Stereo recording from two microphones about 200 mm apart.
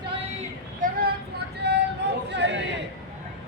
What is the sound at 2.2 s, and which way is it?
Chatter, 60° right (ahead or behind).